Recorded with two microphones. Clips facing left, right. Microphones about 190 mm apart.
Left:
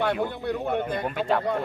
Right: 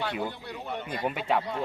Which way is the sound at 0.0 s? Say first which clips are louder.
Left 7 dB; 55° left (ahead or behind).